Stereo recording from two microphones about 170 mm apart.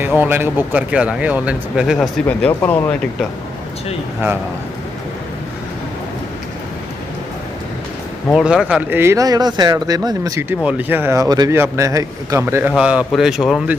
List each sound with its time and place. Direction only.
0.2 s speech: 10° right (ahead or behind); by 2.9 s 15° left (ahead or behind)
8.3 s speech: centre (ahead or behind); by 10.4 s 20° right (ahead or behind)
10.6 s speech: 10° right (ahead or behind)